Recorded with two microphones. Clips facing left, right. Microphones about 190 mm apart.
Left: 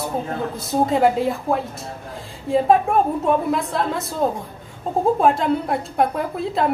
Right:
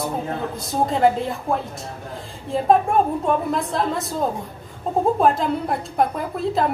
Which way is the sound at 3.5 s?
Centre (ahead or behind).